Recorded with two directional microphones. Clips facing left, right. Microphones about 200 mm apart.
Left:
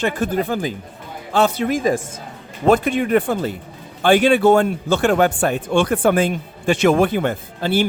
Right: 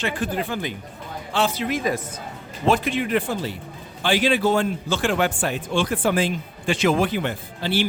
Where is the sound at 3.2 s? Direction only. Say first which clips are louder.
Left 5 dB; 55° left (ahead or behind).